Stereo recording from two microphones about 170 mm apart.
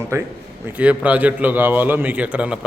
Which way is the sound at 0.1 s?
15° right (ahead or behind).